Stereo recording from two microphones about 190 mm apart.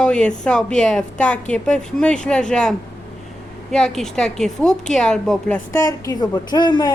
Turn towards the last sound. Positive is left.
turn(degrees=20)  # may be behind; listen again after turning